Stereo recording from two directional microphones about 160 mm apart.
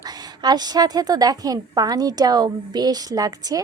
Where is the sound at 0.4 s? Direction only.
25° right (ahead or behind).